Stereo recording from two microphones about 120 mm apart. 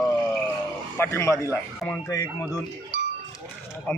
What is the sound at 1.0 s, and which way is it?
Speech, 25° left (ahead or behind).